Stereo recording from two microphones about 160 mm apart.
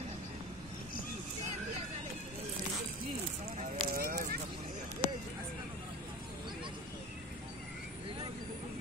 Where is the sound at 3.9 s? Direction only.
60° right (ahead or behind).